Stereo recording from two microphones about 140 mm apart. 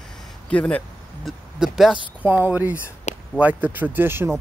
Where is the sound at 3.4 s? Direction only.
10° right (ahead or behind).